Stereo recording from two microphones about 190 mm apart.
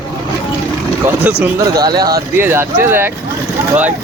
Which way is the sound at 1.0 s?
10° right (ahead or behind).